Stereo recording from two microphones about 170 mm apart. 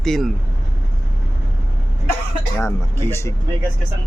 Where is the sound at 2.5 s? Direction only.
15° left (ahead or behind).